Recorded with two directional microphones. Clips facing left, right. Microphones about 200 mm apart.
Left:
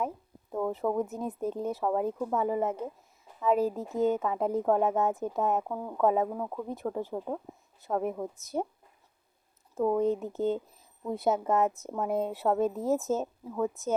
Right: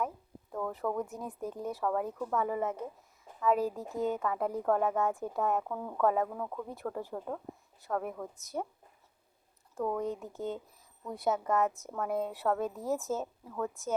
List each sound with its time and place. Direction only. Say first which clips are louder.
0.5 s a woman's voice: left 5 dB; 25° left (ahead or behind)
9.7 s a woman's voice: left 7 dB; 20° left (ahead or behind)